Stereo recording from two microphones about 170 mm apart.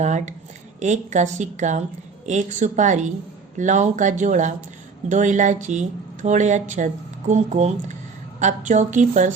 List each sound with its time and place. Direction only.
0.0 s speech: 45° right (ahead or behind)